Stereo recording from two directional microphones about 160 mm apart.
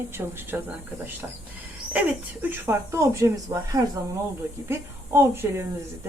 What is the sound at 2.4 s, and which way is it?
A woman's voice, 15° right (ahead or behind).